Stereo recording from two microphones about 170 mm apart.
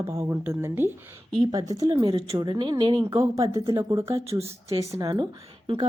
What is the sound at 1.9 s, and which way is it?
A woman's voice, 30° right (ahead or behind).